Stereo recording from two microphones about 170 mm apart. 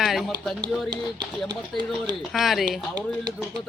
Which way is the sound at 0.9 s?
25° right (ahead or behind).